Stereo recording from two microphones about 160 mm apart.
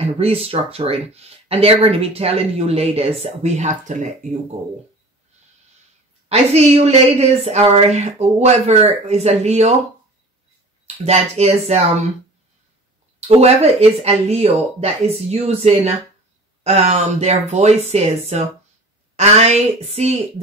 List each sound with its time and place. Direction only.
0.0 s speech: 40° right (ahead or behind)
6.2 s speech: 40° right (ahead or behind)
10.9 s speech: 40° right (ahead or behind)
13.3 s speech: 40° right (ahead or behind)